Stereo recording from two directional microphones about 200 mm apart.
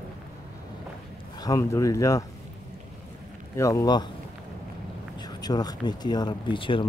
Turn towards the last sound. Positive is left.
turn(degrees=25)  # may be behind; listen again after turning